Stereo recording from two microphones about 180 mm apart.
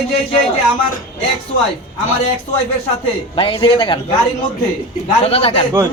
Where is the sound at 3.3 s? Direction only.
25° left (ahead or behind).